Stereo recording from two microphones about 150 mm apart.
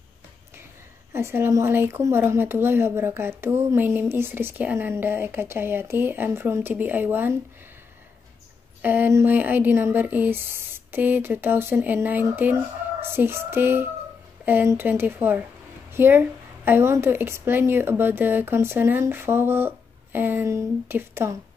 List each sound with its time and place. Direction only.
1.1 s a woman's voice: 15° right (ahead or behind)
8.8 s a woman's voice: 15° right (ahead or behind)